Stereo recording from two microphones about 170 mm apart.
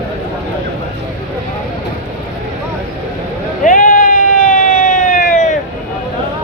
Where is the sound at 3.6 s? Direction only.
55° left (ahead or behind).